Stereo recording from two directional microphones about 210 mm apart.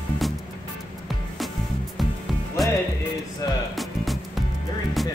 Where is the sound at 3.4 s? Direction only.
15° left (ahead or behind).